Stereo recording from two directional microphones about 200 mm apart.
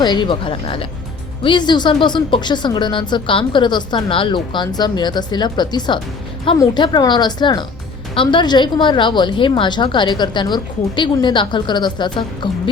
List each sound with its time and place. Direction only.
0.0 s speech: 25° left (ahead or behind)